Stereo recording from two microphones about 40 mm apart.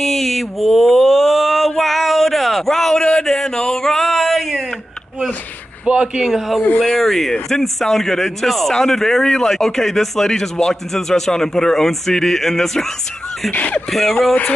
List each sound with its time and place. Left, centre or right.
0.0 s a sound: centre
3.0 s a sound: left; by 4.6 s centre
5.9 s a man's voice: right
6.3 s speech: centre
7.0 s speech: centre
13.5 s speech: left
13.8 s speech: centre